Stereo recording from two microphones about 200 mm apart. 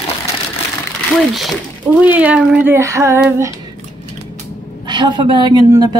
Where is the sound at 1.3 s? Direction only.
5° right (ahead or behind).